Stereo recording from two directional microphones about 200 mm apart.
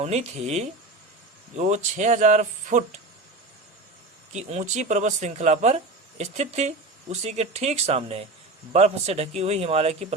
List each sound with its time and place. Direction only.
0.0 s speech: 35° right (ahead or behind)
4.4 s speech: 35° right (ahead or behind)